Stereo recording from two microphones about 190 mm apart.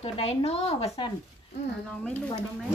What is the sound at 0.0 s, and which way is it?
A woman's voice, 30° left (ahead or behind).